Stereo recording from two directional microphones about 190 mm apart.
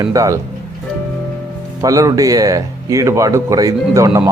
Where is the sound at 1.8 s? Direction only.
20° right (ahead or behind).